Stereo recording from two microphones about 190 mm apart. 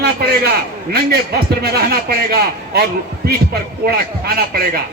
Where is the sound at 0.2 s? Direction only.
55° right (ahead or behind).